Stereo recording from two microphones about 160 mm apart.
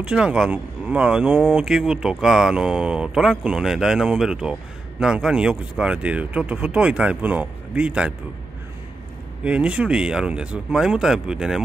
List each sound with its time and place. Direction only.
0.0 s speech: 5° right (ahead or behind)
9.4 s speech: 10° right (ahead or behind)